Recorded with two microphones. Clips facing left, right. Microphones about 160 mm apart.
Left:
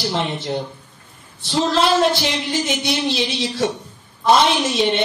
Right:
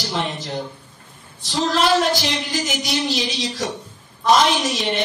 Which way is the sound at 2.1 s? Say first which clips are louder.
Left 1 dB; 30° left (ahead or behind).